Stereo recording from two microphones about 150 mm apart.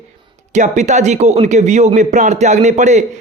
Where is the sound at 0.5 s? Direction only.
50° right (ahead or behind).